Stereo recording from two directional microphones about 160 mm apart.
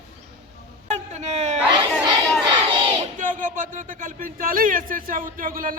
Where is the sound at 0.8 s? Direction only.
45° right (ahead or behind).